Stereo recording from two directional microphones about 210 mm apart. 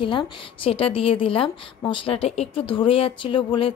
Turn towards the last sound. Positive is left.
turn(degrees=25)  # may be behind; listen again after turning